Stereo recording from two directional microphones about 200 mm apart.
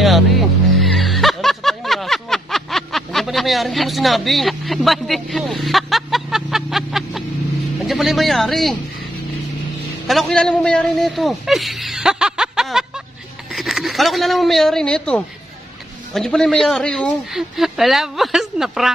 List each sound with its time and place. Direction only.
0.0 s music: centre (ahead or behind)
7.8 s a man's voice: centre (ahead or behind)
10.0 s a man's voice: centre (ahead or behind)